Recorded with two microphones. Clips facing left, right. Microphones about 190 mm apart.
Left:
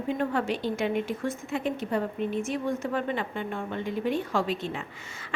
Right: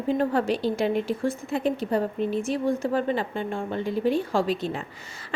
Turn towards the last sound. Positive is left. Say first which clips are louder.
# right 2 dB
turn(degrees=-35)  # may be behind; listen again after turning